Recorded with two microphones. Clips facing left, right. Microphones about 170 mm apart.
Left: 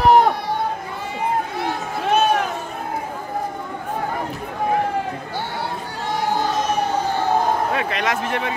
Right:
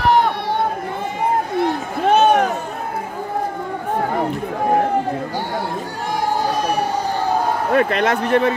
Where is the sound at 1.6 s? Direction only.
60° right (ahead or behind).